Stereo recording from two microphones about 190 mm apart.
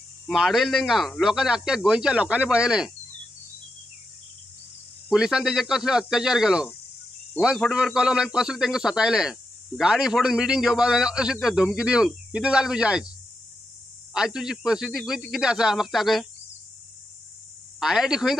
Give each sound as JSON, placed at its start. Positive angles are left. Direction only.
{"t": 0.3, "sound": "a man's voice", "side_deg": 0}
{"t": 5.1, "sound": "a man's voice", "side_deg": -5}
{"t": 14.1, "sound": "a man's voice", "side_deg": -5}
{"t": 17.7, "sound": "a man's voice", "side_deg": -5}